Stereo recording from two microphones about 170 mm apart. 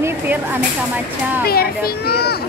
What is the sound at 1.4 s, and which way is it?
Speech, 65° left (ahead or behind).